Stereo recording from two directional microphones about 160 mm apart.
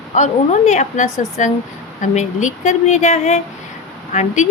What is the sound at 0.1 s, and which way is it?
Speech, 45° left (ahead or behind).